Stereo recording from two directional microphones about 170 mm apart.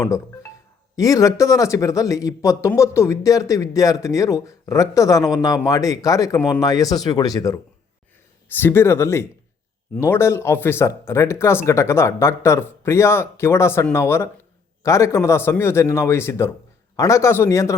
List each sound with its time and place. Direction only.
0.9 s speech: 20° left (ahead or behind)